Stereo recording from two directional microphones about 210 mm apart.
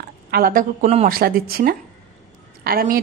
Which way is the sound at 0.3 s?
40° right (ahead or behind).